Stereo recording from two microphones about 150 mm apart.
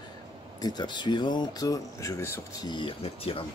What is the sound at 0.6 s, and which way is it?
Speech, 30° left (ahead or behind).